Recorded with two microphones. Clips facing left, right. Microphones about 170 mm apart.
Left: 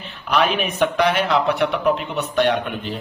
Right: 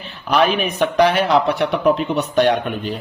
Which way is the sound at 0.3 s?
40° right (ahead or behind).